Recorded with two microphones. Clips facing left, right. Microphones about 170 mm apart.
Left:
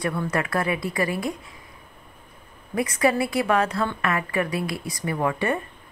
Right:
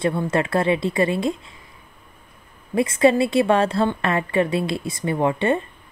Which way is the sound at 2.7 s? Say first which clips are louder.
Right 5 dB; 25° right (ahead or behind).